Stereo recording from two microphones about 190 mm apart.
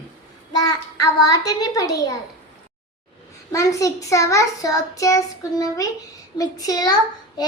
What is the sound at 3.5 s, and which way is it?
A child's voice, 15° left (ahead or behind).